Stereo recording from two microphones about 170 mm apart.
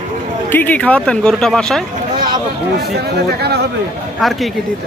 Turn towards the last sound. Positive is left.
turn(degrees=0)  # may be behind; listen again after turning